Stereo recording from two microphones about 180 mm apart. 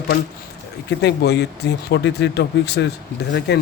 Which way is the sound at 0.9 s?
65° left (ahead or behind).